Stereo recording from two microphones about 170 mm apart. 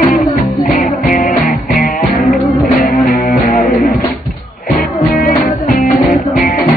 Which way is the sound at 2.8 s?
60° left (ahead or behind).